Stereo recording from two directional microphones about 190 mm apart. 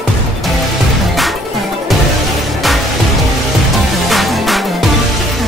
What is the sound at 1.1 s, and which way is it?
Music, centre (ahead or behind).